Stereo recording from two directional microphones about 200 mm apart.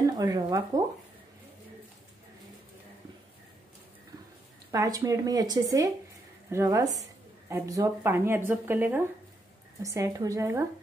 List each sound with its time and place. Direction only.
0.0 s speech: 15° right (ahead or behind)
4.6 s a woman's voice: 20° right (ahead or behind)